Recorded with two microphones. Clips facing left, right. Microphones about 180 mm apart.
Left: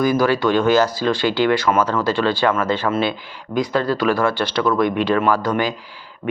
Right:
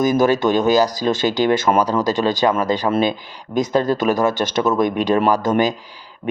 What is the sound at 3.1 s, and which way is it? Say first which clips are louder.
Speech: right 2 dB; 45° right (ahead or behind).